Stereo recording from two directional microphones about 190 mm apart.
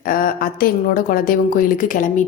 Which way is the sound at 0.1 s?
50° left (ahead or behind).